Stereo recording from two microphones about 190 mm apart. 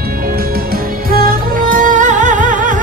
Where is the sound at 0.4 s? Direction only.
50° right (ahead or behind).